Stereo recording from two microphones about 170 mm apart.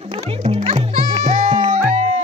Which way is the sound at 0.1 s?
35° right (ahead or behind).